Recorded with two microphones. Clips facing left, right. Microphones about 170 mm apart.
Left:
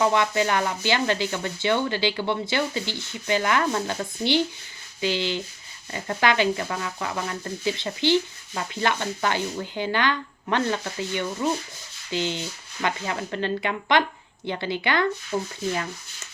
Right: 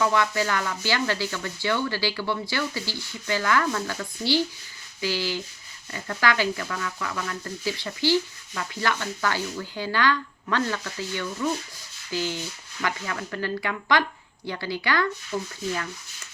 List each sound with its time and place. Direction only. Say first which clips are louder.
0.0 s speech: left 2 dB; 20° left (ahead or behind)
4.9 s rub: left 2 dB; 20° left (ahead or behind)
5.9 s speech: left 2 dB; 25° left (ahead or behind)